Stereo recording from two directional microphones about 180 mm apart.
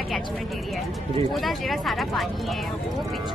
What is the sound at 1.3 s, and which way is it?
Speech, centre (ahead or behind).